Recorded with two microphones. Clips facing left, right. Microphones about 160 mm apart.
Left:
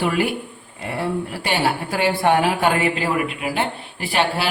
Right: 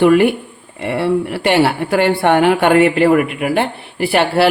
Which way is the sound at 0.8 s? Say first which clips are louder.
Right 8 dB; 75° right (ahead or behind).